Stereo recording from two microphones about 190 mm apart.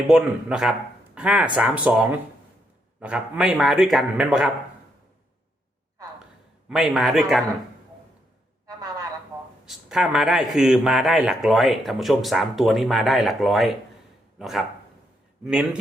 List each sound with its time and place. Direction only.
0.1 s a man's voice: 5° right (ahead or behind)
6.7 s a man's voice: centre (ahead or behind)
8.6 s a sound: 20° right (ahead or behind)
9.6 s a man's voice: 5° right (ahead or behind)